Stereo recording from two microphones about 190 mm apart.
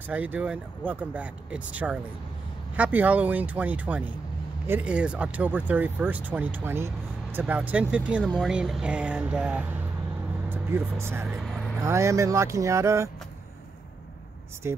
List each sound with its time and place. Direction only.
0.1 s speech: 10° right (ahead or behind)